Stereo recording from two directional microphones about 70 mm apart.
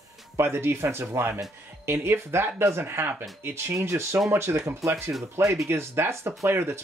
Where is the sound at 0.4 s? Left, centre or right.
Right.